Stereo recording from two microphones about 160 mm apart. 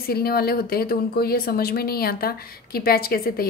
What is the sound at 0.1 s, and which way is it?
A woman's voice, 70° left (ahead or behind).